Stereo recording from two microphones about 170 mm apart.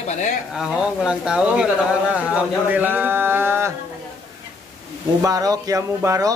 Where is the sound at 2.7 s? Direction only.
10° right (ahead or behind).